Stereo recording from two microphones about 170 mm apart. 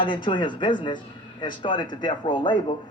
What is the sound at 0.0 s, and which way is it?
Speech, 30° left (ahead or behind).